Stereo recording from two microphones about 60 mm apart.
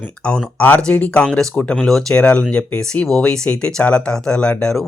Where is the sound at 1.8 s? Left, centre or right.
Centre.